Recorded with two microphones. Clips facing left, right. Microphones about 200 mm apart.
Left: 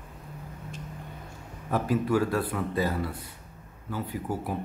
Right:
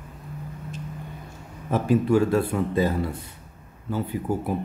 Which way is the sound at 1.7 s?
25° right (ahead or behind).